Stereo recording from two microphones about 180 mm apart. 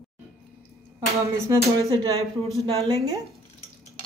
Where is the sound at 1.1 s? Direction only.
15° right (ahead or behind).